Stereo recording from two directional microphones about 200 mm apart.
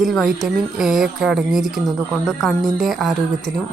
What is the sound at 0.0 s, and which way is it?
Speech, centre (ahead or behind).